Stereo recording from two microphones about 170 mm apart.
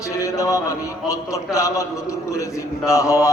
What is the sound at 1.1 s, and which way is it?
A man's voice, 20° left (ahead or behind).